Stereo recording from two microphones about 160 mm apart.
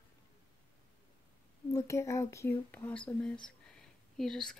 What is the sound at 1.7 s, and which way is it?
Speech, 20° left (ahead or behind).